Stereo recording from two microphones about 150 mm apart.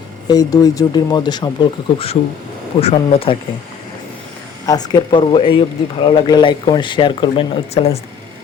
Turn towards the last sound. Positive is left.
turn(degrees=40)  # may be behind; listen again after turning